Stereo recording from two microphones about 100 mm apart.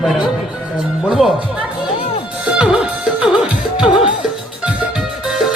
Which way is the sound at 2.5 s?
10° right (ahead or behind).